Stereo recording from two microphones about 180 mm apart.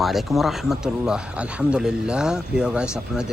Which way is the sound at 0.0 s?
Centre (ahead or behind).